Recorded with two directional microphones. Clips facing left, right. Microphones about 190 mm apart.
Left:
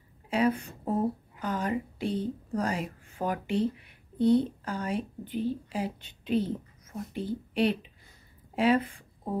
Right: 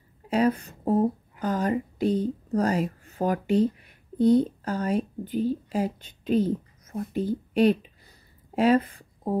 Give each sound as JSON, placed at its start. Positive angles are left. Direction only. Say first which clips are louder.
{"t": 0.3, "sound": "a woman's voice", "louder": "right 3 dB", "side_deg": -40}